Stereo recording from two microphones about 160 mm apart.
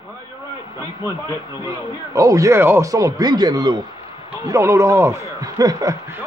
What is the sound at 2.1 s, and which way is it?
Speech, 20° right (ahead or behind).